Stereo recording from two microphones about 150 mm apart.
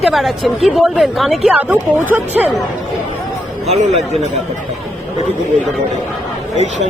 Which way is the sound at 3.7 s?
45° right (ahead or behind).